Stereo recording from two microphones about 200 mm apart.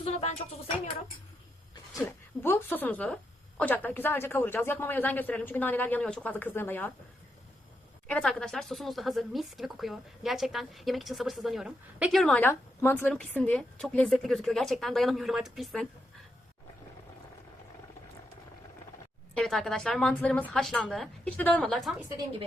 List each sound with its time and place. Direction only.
0.0 s speech: 30° left (ahead or behind)
2.4 s speech: 10° left (ahead or behind)
8.0 s speech: 5° left (ahead or behind)
19.4 s speech: centre (ahead or behind)